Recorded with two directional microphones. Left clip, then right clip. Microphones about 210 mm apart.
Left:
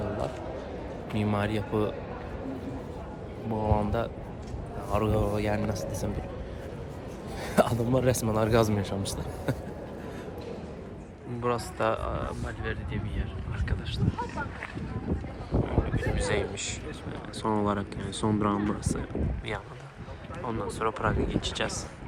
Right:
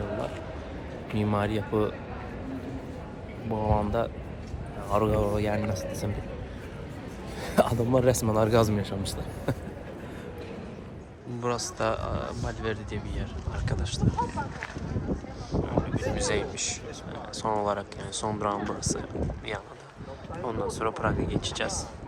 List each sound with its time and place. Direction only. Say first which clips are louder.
1.1 s speech: right 2 dB; 5° left (ahead or behind)
3.5 s speech: right 1 dB; 10° left (ahead or behind)
7.4 s speech: right 1 dB; 10° left (ahead or behind)
9.5 s vehicle: right 1 dB; 5° left (ahead or behind)
11.4 s speech: left 1 dB; 10° right (ahead or behind)
13.7 s speech: right 3 dB; 30° right (ahead or behind)
16.1 s speech: even; 15° right (ahead or behind)
20.5 s speech: even; 15° right (ahead or behind)